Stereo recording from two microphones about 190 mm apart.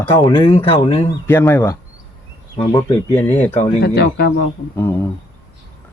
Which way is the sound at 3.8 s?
60° left (ahead or behind).